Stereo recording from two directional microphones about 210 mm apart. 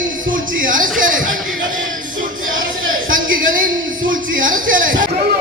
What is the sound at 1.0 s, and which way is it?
Chatter, 40° right (ahead or behind).